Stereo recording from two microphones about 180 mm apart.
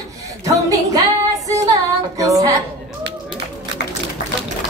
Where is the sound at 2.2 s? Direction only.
20° right (ahead or behind).